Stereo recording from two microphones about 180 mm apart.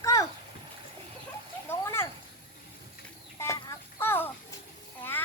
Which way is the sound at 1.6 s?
15° left (ahead or behind).